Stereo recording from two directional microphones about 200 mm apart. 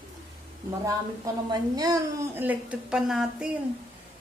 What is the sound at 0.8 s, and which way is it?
A woman's voice, 20° right (ahead or behind).